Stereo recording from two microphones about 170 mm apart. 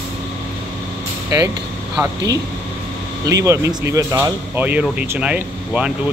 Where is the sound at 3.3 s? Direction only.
20° right (ahead or behind).